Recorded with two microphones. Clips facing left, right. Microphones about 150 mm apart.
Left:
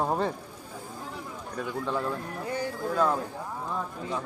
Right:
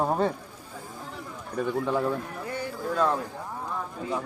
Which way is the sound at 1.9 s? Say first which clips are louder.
Right 2 dB; 15° right (ahead or behind).